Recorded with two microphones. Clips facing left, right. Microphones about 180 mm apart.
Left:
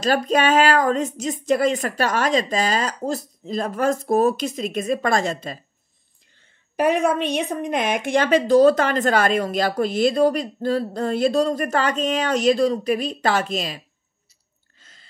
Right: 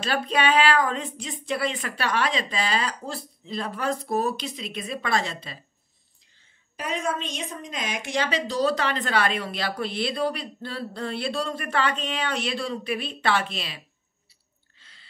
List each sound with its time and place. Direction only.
0.0 s a woman's voice: 40° left (ahead or behind)
6.8 s a woman's voice: 65° left (ahead or behind); by 13.8 s 45° left (ahead or behind)
14.8 s chewing: 45° left (ahead or behind)